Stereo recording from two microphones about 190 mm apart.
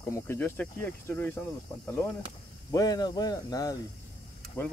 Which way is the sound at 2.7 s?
20° left (ahead or behind).